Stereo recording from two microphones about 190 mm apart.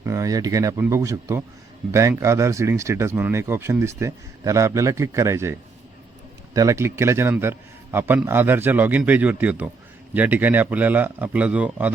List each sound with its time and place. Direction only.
0.0 s speech: 15° right (ahead or behind)